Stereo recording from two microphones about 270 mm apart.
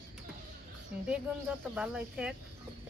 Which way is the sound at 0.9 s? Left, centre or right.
Centre.